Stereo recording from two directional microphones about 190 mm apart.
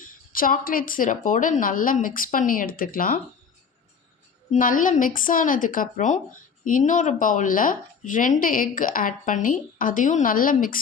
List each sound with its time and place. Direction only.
0.0 s a woman's voice: 45° left (ahead or behind)
4.5 s a woman's voice: 45° left (ahead or behind)